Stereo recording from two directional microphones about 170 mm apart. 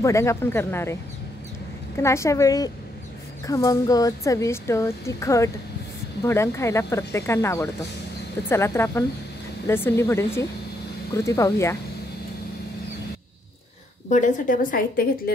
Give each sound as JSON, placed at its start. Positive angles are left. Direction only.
{"t": 0.0, "sound": "speech", "side_deg": 15}
{"t": 2.0, "sound": "speech", "side_deg": 15}
{"t": 14.0, "sound": "a woman's voice", "side_deg": 45}